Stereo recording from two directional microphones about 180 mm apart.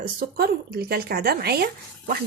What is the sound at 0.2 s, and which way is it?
Speech, 60° right (ahead or behind).